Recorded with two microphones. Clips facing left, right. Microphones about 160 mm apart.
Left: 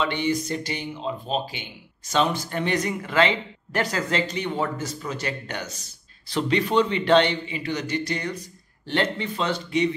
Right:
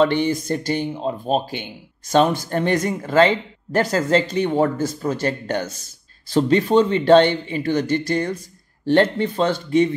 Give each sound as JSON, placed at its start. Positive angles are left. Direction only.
{"t": 0.0, "sound": "speech", "side_deg": -45}